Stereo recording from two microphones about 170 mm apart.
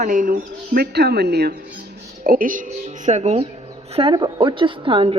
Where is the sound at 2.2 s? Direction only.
55° right (ahead or behind).